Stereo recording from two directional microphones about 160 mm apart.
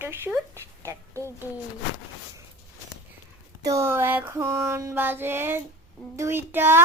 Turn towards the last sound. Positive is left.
turn(degrees=-15)  # may be behind; listen again after turning